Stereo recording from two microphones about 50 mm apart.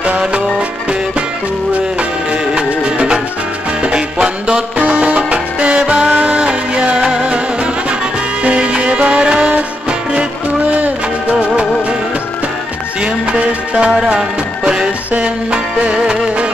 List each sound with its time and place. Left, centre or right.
2.5 s music: centre
8.5 s music: right
11.3 s music of bollywood: centre
13.0 s music: right